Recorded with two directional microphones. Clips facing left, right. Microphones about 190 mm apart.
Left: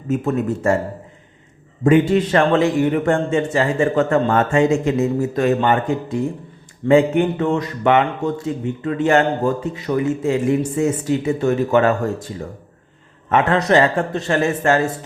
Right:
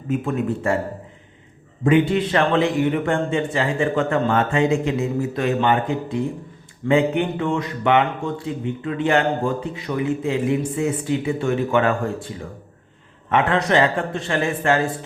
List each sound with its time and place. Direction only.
0.1 s a man's voice: 45° left (ahead or behind)
1.8 s a man's voice: 45° left (ahead or behind)
13.3 s a man's voice: 40° left (ahead or behind)